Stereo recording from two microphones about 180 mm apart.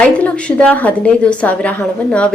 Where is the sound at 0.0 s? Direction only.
5° left (ahead or behind).